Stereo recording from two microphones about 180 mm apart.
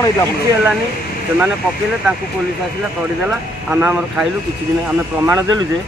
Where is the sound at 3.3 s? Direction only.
10° right (ahead or behind).